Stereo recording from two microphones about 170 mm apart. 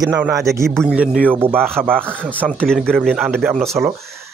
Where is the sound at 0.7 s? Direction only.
Centre (ahead or behind).